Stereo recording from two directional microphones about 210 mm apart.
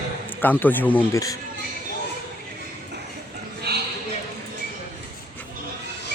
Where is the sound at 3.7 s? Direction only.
50° right (ahead or behind).